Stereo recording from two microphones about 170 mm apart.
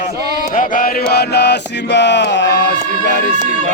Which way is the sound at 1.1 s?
75° left (ahead or behind).